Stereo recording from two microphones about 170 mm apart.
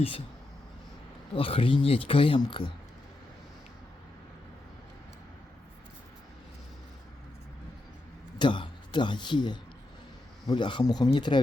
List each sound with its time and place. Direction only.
1.4 s speech: 30° left (ahead or behind)
8.4 s speech: 30° left (ahead or behind)